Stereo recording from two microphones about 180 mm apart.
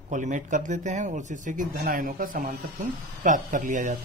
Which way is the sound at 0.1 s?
45° right (ahead or behind).